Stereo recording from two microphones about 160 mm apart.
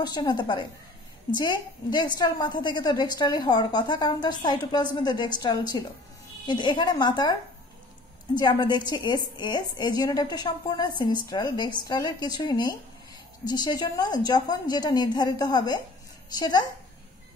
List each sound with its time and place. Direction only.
0.0 s a woman's voice: 25° left (ahead or behind)
8.4 s a woman's voice: 25° left (ahead or behind)